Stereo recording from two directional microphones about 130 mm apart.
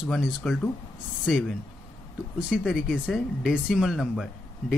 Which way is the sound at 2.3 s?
10° right (ahead or behind).